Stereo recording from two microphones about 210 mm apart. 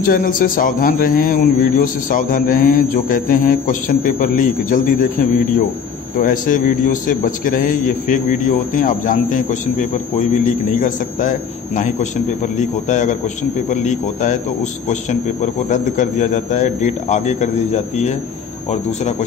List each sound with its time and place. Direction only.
0.0 s a man's voice: 40° left (ahead or behind)
6.2 s a man's voice: 40° left (ahead or behind)